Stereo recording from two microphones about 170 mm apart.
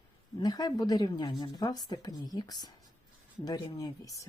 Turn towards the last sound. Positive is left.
turn(degrees=20)  # may be behind; listen again after turning